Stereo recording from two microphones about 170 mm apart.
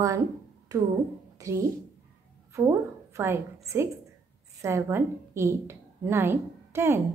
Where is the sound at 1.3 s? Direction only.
15° right (ahead or behind).